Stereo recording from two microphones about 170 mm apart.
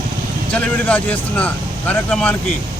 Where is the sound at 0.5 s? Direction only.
10° left (ahead or behind).